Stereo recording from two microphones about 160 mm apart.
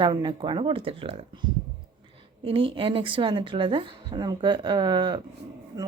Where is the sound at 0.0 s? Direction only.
30° right (ahead or behind).